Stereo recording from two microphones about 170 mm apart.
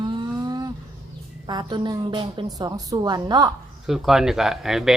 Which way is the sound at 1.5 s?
25° right (ahead or behind).